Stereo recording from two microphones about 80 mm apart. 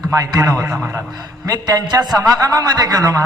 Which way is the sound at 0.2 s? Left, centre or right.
Right.